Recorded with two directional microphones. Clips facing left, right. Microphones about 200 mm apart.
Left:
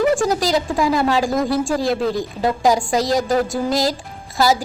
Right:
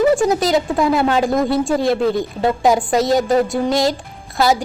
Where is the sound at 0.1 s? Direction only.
15° right (ahead or behind).